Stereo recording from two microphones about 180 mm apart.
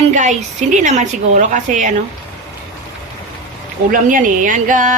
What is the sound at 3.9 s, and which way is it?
A woman's voice, 50° right (ahead or behind).